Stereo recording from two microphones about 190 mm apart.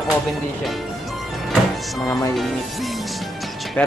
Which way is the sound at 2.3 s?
Centre (ahead or behind).